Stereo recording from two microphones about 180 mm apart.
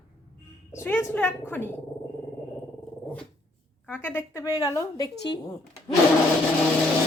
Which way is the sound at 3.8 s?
10° left (ahead or behind).